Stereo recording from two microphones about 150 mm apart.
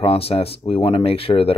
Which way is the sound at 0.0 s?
40° left (ahead or behind).